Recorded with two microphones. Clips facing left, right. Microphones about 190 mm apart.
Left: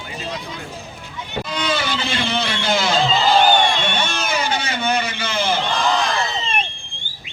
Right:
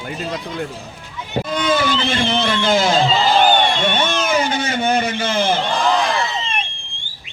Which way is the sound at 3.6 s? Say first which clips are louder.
Right 3 dB; 50° right (ahead or behind).